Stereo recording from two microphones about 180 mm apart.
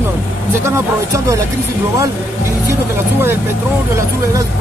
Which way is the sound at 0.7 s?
15° right (ahead or behind).